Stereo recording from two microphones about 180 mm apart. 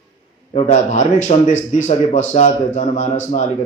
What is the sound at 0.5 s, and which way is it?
Speech, 40° left (ahead or behind).